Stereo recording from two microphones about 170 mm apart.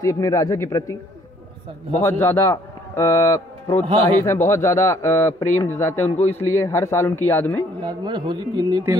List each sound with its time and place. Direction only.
0.0 s a man's voice: 20° left (ahead or behind)
2.0 s a man's voice: 15° left (ahead or behind)
3.8 s a man's voice: 35° right (ahead or behind)
4.2 s a man's voice: 15° left (ahead or behind)
7.8 s speech: 25° right (ahead or behind)